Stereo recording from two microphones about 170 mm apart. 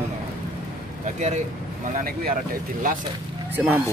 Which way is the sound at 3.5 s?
10° right (ahead or behind).